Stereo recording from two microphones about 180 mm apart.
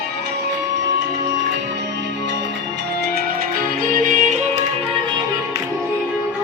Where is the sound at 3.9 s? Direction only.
45° right (ahead or behind).